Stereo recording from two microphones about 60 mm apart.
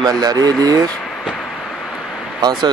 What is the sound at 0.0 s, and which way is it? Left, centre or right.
Speech, right.